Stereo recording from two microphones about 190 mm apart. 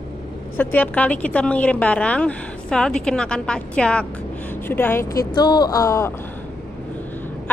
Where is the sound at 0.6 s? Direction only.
10° left (ahead or behind).